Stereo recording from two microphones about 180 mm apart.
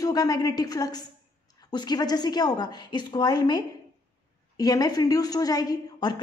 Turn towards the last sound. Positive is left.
turn(degrees=20)  # may be behind; listen again after turning